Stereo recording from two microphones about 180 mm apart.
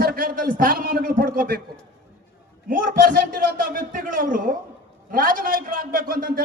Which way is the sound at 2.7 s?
50° right (ahead or behind).